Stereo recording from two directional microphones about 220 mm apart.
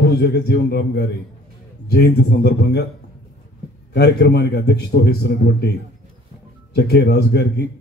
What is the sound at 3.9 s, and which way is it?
Speech, 50° left (ahead or behind).